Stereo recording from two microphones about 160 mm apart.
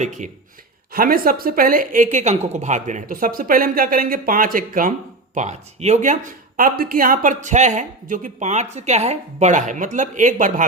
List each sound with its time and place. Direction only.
0.0 s speech: 50° right (ahead or behind)
0.9 s speech: 65° right (ahead or behind); by 6.1 s 45° right (ahead or behind)
6.6 s speech: 65° right (ahead or behind)